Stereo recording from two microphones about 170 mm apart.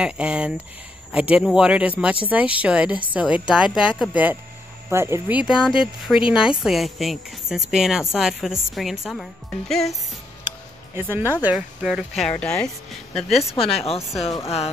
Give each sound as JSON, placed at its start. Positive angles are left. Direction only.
{"t": 0.0, "sound": "speech", "side_deg": -5}
{"t": 11.0, "sound": "speech", "side_deg": -15}
{"t": 13.6, "sound": "speech", "side_deg": 35}